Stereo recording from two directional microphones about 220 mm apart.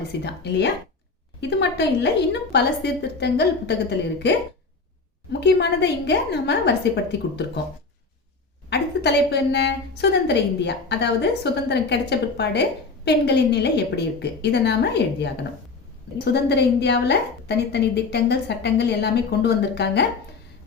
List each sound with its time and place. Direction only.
0.2 s a woman's voice: 50° left (ahead or behind)
8.7 s a woman's voice: 50° left (ahead or behind)